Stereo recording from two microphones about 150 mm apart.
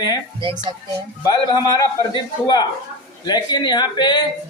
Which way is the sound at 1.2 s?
25° left (ahead or behind).